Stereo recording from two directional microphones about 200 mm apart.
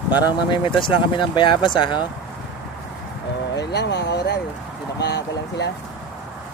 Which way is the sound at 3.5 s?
60° left (ahead or behind).